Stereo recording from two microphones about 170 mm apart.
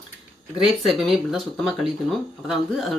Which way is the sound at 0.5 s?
Centre (ahead or behind).